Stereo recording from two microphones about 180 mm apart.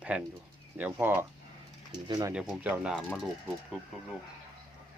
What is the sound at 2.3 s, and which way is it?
Speech, 5° right (ahead or behind).